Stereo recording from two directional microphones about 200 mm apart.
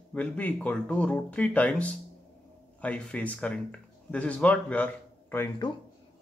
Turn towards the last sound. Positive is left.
turn(degrees=10)  # may be behind; listen again after turning